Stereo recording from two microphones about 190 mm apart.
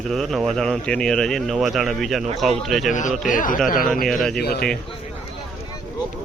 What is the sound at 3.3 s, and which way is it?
Speech, 45° left (ahead or behind).